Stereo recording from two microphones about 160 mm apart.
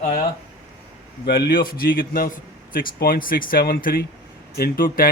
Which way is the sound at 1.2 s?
85° left.